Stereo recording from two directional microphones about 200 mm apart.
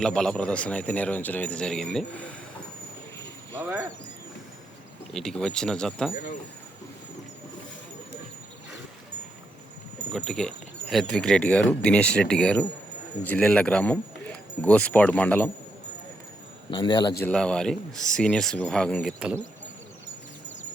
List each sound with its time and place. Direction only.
0.0 s a man's voice: 5° left (ahead or behind)
3.6 s speech: 10° right (ahead or behind)
5.1 s speech: 5° left (ahead or behind)
10.1 s a man's voice: centre (ahead or behind)
16.7 s a man's voice: 20° left (ahead or behind)
17.2 s speech: 5° left (ahead or behind)